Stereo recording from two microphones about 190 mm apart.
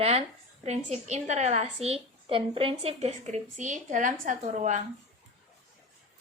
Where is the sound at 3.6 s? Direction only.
40° right (ahead or behind).